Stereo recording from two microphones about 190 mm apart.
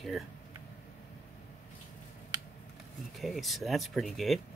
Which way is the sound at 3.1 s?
Centre (ahead or behind).